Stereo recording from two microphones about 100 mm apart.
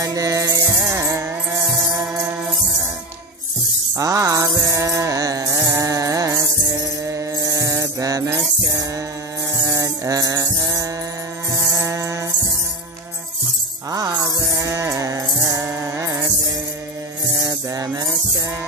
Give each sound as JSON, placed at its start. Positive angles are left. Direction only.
{"t": 0.0, "sound": "music", "side_deg": -35}
{"t": 3.9, "sound": "music", "side_deg": -35}
{"t": 13.8, "sound": "music", "side_deg": -40}
{"t": 17.4, "sound": "music", "side_deg": -35}